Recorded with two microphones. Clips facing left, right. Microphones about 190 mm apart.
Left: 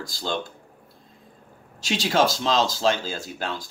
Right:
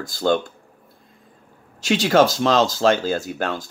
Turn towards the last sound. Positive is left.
turn(degrees=-50)  # may be behind; listen again after turning